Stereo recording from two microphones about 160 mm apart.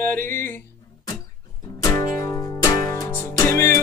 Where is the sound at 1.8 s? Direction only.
20° left (ahead or behind).